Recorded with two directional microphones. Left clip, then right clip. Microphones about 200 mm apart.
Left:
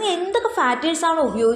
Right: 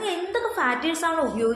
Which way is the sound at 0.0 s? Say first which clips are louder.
Left 5 dB; 30° left (ahead or behind).